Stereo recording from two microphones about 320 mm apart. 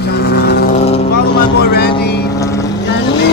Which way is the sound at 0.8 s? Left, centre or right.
Centre.